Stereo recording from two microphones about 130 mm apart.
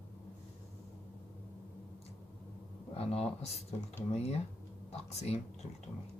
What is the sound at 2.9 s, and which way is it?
Speech, 50° left (ahead or behind).